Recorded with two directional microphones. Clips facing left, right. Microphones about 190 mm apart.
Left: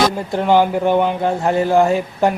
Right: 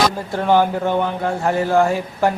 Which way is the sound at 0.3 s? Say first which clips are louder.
Left 2 dB; 15° left (ahead or behind).